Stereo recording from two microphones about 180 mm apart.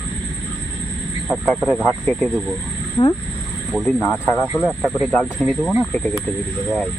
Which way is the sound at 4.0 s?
10° left (ahead or behind).